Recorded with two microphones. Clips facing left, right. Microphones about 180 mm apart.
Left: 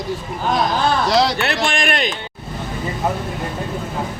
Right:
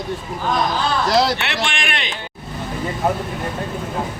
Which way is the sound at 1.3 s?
40° left (ahead or behind).